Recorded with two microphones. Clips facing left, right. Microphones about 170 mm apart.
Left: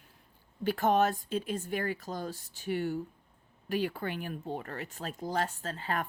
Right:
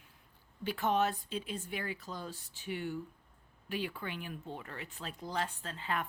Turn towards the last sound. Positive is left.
turn(degrees=40)  # may be behind; listen again after turning